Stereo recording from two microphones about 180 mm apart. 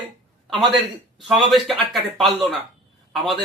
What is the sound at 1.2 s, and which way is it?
Speech, centre (ahead or behind).